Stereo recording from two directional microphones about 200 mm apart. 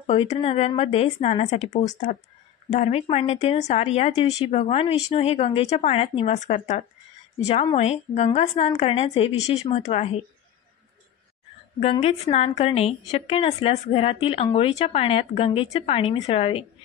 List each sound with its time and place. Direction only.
0.0 s a woman's voice: 30° left (ahead or behind)
11.8 s a woman's voice: 30° left (ahead or behind)